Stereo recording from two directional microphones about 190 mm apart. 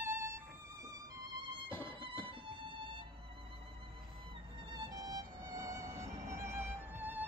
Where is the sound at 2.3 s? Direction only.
25° right (ahead or behind).